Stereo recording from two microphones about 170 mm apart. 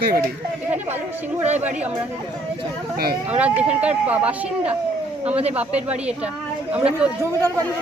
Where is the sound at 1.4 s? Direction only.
40° right (ahead or behind).